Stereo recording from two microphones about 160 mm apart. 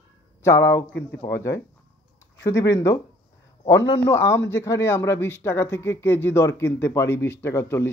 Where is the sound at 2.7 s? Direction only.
20° left (ahead or behind).